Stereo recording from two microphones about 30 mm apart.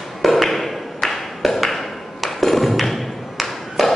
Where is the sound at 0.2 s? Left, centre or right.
Centre.